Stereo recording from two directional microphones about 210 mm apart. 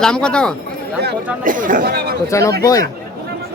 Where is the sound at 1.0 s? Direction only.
40° right (ahead or behind).